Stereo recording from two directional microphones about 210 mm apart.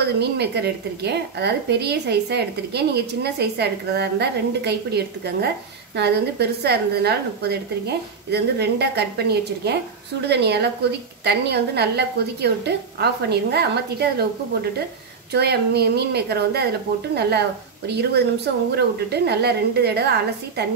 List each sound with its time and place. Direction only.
0.0 s a woman's voice: 50° right (ahead or behind)
15.3 s a woman's voice: 50° right (ahead or behind)